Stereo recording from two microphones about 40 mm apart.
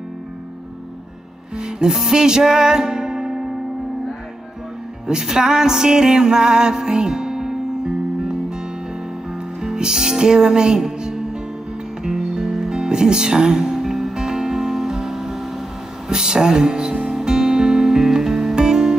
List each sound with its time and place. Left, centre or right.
1.6 s music: centre
5.0 s music: centre
9.6 s speech: centre
12.0 s music: centre